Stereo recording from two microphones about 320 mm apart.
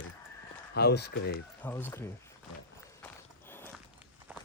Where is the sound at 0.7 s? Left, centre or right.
Left.